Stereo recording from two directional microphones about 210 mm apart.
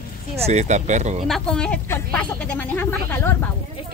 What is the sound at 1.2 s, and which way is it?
Speech, centre (ahead or behind).